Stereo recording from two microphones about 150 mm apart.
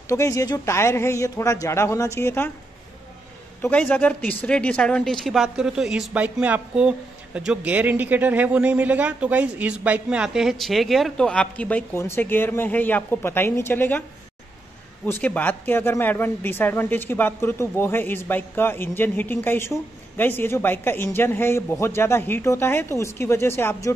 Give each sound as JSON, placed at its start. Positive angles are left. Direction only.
{"t": 0.1, "sound": "speech", "side_deg": 20}
{"t": 3.9, "sound": "speech", "side_deg": 10}
{"t": 15.0, "sound": "speech", "side_deg": 10}